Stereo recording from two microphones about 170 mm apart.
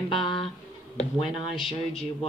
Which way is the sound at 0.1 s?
30° left (ahead or behind).